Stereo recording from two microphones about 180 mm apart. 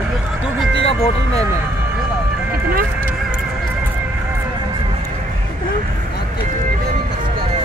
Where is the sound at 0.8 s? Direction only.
35° left (ahead or behind).